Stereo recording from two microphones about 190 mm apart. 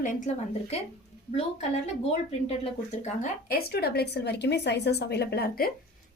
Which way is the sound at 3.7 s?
55° left (ahead or behind).